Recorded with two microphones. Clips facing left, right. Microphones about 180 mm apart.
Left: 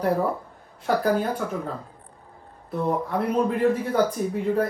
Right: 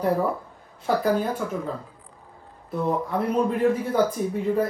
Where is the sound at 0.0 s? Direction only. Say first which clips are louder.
Even; centre (ahead or behind).